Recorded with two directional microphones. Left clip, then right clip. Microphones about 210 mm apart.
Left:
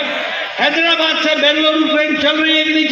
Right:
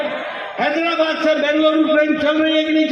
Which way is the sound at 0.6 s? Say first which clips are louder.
Left 4 dB; 60° right (ahead or behind).